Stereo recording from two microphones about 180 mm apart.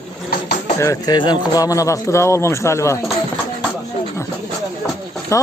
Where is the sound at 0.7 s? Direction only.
15° left (ahead or behind).